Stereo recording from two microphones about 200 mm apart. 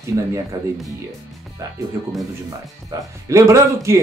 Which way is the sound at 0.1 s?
15° right (ahead or behind).